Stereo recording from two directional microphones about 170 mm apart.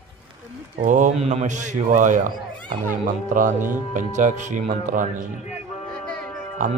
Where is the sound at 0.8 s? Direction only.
45° right (ahead or behind).